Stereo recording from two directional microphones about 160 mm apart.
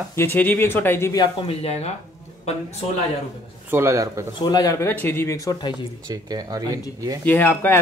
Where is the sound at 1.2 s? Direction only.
40° left (ahead or behind).